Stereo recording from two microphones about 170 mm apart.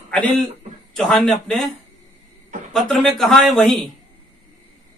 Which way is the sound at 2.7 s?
Centre (ahead or behind).